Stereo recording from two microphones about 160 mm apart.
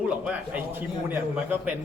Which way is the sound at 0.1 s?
10° right (ahead or behind).